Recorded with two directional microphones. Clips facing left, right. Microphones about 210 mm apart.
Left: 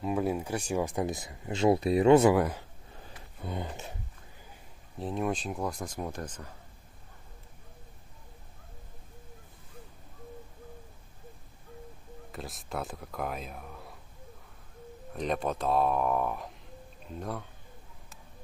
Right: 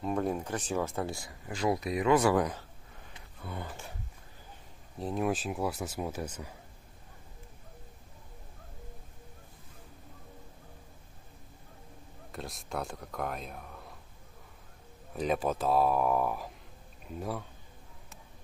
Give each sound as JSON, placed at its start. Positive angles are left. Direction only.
{"t": 0.0, "sound": "speech", "side_deg": 5}
{"t": 2.3, "sound": "speech", "side_deg": 10}
{"t": 3.4, "sound": "speech", "side_deg": 20}
{"t": 4.9, "sound": "speech", "side_deg": 0}
{"t": 12.3, "sound": "speech", "side_deg": 0}
{"t": 15.1, "sound": "speech", "side_deg": -5}